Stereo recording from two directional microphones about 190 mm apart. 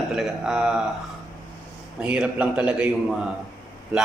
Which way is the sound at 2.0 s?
5° right (ahead or behind).